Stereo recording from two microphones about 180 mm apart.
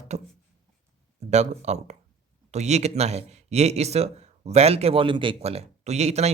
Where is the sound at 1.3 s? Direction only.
40° right (ahead or behind).